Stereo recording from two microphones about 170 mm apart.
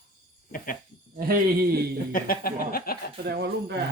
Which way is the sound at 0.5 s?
55° left (ahead or behind).